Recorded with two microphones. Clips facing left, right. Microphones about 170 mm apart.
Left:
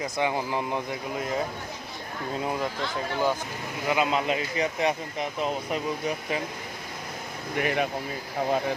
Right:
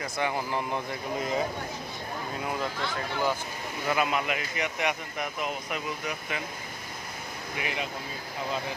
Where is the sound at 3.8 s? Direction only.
20° left (ahead or behind).